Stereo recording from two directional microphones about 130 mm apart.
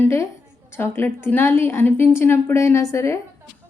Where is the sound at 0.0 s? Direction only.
20° left (ahead or behind).